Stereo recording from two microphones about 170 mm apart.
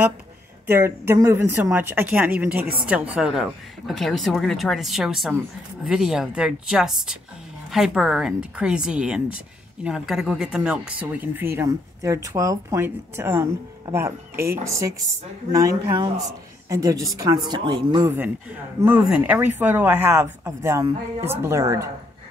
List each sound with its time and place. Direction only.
0.7 s speech: 15° right (ahead or behind)
16.6 s speech: 20° right (ahead or behind)
18.8 s speech: 10° right (ahead or behind)